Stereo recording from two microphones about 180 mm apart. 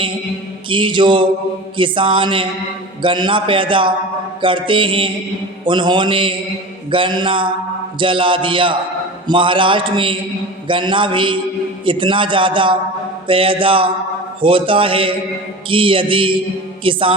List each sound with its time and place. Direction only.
0.7 s a man's voice: 25° right (ahead or behind)